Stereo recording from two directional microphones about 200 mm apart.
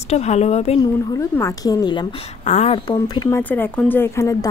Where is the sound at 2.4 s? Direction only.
35° left (ahead or behind).